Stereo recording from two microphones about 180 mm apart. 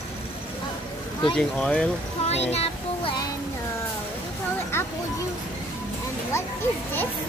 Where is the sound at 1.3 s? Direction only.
5° left (ahead or behind).